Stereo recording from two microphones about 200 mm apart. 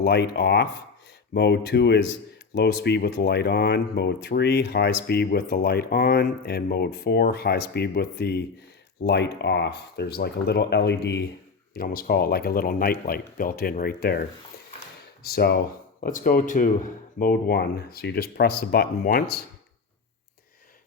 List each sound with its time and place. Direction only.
0.0 s speech: 55° left (ahead or behind)
16.0 s speech: 40° left (ahead or behind)